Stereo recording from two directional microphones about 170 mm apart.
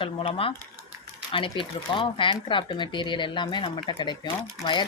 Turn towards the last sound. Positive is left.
turn(degrees=25)  # may be behind; listen again after turning